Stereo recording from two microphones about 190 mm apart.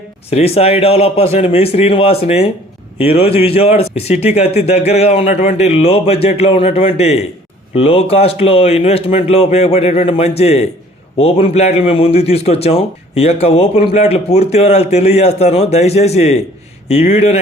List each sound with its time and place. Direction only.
0.3 s a man's voice: 30° left (ahead or behind)